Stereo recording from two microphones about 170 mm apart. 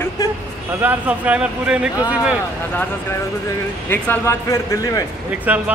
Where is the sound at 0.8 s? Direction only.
10° right (ahead or behind).